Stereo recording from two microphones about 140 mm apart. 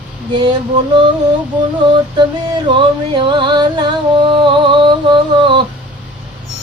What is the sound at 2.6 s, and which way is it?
Music, 35° right (ahead or behind).